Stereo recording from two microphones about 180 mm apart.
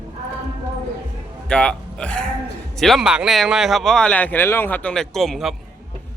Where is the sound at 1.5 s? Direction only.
5° left (ahead or behind).